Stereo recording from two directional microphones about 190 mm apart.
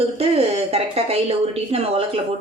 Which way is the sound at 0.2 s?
30° right (ahead or behind).